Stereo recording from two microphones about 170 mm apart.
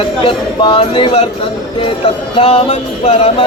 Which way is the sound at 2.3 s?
35° left (ahead or behind).